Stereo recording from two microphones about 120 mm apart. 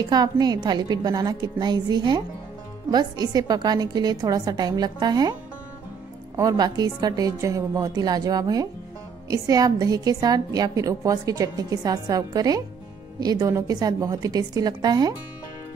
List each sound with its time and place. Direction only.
0.0 s a woman's voice: 35° right (ahead or behind)
6.3 s a woman's voice: 30° right (ahead or behind)